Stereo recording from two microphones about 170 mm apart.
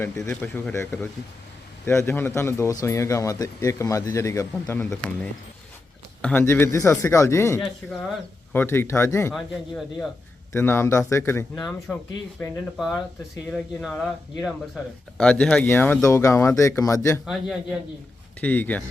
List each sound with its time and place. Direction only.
0.3 s speech: 10° left (ahead or behind)
9.3 s speech: centre (ahead or behind)
10.5 s speech: 15° left (ahead or behind)
11.9 s speech: centre (ahead or behind); by 17.2 s 15° left (ahead or behind)
17.2 s speech: 5° right (ahead or behind)
18.3 s speech: 10° left (ahead or behind)